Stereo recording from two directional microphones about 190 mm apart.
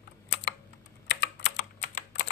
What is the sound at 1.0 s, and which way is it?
Typing, 60° left (ahead or behind).